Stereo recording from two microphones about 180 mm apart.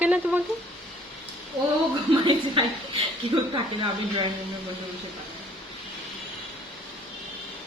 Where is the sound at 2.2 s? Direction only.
25° right (ahead or behind).